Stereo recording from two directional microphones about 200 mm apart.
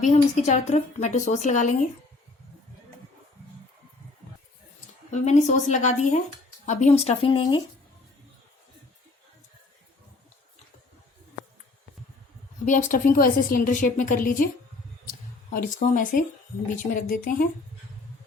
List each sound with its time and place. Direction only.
0.0 s a woman's voice: 35° left (ahead or behind)
5.1 s a woman's voice: 35° left (ahead or behind)
12.6 s a woman's voice: 40° left (ahead or behind)